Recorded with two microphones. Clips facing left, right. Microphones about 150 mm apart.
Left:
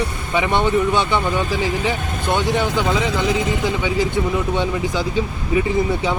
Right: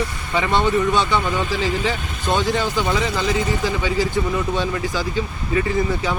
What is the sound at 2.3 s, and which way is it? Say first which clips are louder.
Speech: left 1 dB; 20° left (ahead or behind).